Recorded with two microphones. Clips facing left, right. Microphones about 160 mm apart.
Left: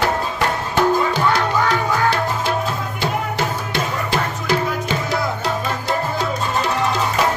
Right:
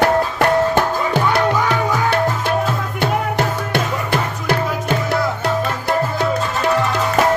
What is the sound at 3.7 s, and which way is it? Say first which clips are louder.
Music: right 2 dB; 55° right (ahead or behind).